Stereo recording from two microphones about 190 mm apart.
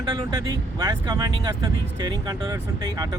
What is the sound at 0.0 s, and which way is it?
Speech, 25° right (ahead or behind).